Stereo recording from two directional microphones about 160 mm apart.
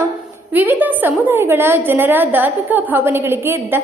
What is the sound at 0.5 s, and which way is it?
A woman's voice, 10° right (ahead or behind).